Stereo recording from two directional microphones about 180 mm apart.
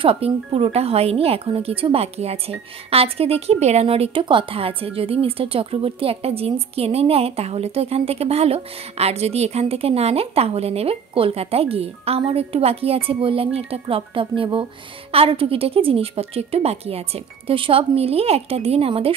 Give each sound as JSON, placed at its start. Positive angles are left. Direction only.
{"t": 0.0, "sound": "speech", "side_deg": -30}